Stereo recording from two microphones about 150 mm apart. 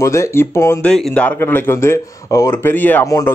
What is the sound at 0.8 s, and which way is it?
Speech, 5° left (ahead or behind).